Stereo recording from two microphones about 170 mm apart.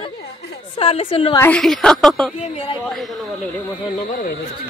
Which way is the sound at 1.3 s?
15° left (ahead or behind).